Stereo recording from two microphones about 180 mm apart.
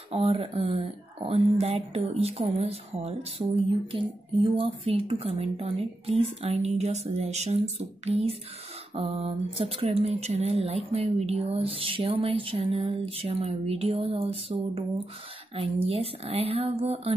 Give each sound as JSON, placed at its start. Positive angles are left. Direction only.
{"t": 0.1, "sound": "speech", "side_deg": -30}